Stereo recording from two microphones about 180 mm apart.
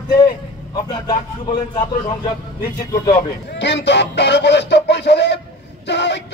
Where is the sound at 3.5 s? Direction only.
75° left (ahead or behind).